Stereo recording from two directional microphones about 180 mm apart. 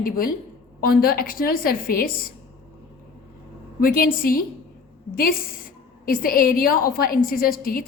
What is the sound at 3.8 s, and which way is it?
A woman's voice, 55° left (ahead or behind).